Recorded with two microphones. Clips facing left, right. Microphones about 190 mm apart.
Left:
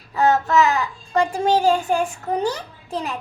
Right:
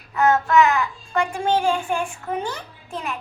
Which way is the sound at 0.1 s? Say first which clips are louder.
Even; 35° left (ahead or behind).